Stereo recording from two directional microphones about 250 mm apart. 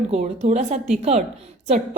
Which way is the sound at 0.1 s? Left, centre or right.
Right.